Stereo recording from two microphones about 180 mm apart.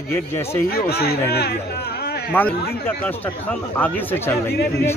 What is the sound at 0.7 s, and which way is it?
Speech, 60° left (ahead or behind).